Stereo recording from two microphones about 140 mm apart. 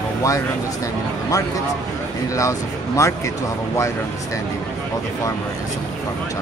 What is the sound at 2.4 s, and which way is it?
Speech, 20° left (ahead or behind).